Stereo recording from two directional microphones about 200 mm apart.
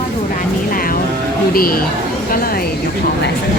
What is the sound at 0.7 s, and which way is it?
Vehicle, 45° left (ahead or behind).